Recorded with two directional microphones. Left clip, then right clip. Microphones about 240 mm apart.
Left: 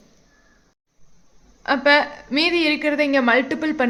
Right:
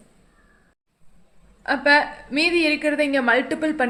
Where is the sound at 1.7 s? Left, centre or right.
Centre.